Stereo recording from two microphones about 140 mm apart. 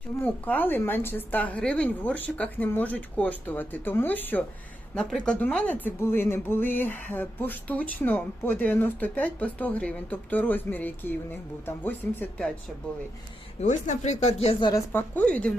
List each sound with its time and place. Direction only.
0.2 s speech: 15° left (ahead or behind)
13.6 s speech: 55° left (ahead or behind)
14.6 s speech: 25° left (ahead or behind)
14.9 s speech: 10° left (ahead or behind)